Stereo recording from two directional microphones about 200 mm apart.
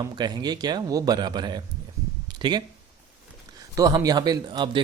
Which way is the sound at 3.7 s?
20° right (ahead or behind).